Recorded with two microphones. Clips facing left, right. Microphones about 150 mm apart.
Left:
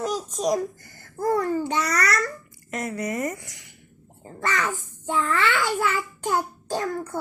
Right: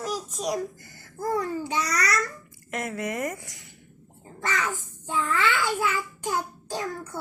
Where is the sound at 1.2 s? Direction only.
60° left (ahead or behind).